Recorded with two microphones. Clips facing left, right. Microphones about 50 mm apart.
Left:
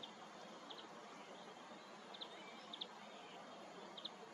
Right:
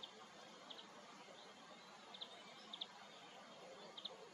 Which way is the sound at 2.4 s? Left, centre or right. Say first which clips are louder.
Left 3 dB; left.